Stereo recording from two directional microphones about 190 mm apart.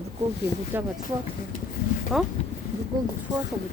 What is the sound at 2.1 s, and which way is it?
Speech, 5° right (ahead or behind).